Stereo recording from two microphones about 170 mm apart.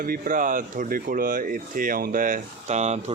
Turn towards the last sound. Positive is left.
turn(degrees=-40)  # may be behind; listen again after turning